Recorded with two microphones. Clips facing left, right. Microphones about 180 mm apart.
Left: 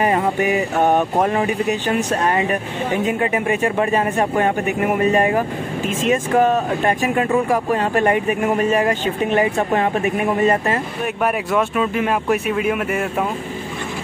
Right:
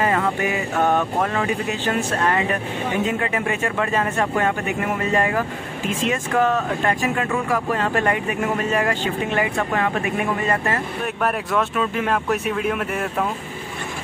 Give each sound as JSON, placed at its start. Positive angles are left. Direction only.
{"t": 0.0, "sound": "speech", "side_deg": 20}
{"t": 11.2, "sound": "speech", "side_deg": 5}